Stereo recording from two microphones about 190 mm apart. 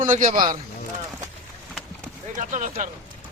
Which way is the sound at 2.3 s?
40° right (ahead or behind).